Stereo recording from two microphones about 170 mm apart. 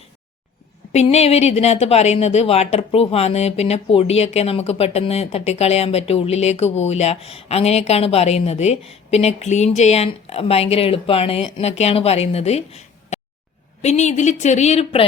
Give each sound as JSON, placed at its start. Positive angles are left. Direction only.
{"t": 0.9, "sound": "a woman's voice", "side_deg": 40}